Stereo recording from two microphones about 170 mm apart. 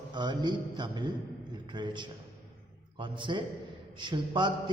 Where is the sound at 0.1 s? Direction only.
25° right (ahead or behind).